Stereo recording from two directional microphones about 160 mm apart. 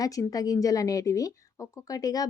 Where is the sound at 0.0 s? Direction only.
20° left (ahead or behind).